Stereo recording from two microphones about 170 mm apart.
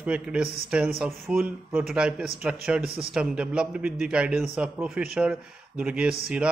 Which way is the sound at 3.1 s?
5° right (ahead or behind).